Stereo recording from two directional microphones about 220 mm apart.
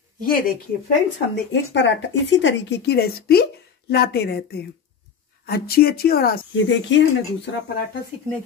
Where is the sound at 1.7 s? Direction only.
55° left (ahead or behind).